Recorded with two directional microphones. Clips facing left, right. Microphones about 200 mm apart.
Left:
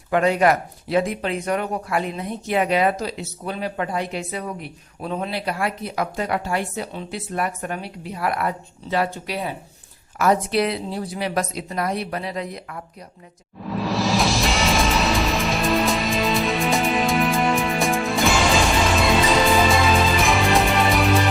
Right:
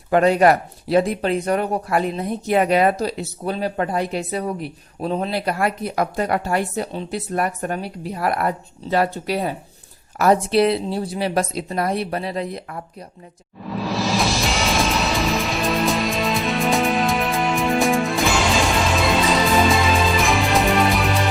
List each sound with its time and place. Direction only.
0.1 s speech: 35° right (ahead or behind)
5.5 s a woman's voice: 45° right (ahead or behind); by 12.8 s 30° right (ahead or behind)
13.6 s music: centre (ahead or behind)